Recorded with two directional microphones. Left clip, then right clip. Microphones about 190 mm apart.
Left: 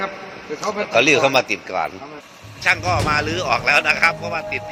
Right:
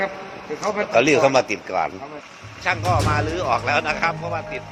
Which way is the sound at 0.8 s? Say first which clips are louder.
Left 1 dB; 10° right (ahead or behind).